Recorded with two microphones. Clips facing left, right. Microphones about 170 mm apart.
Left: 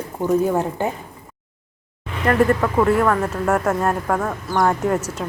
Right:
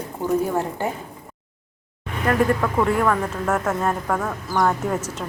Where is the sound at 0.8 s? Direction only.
20° left (ahead or behind).